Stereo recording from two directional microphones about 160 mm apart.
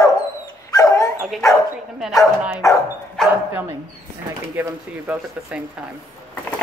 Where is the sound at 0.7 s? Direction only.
20° left (ahead or behind).